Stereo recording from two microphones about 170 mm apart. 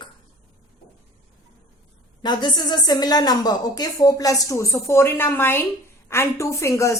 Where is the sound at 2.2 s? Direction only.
25° left (ahead or behind).